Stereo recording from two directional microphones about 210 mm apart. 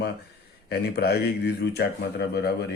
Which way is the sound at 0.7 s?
50° left (ahead or behind).